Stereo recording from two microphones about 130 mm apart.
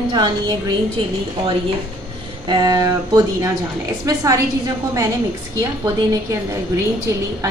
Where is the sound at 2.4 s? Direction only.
35° right (ahead or behind).